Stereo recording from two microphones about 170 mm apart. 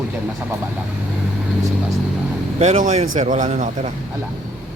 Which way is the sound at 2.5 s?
45° right (ahead or behind).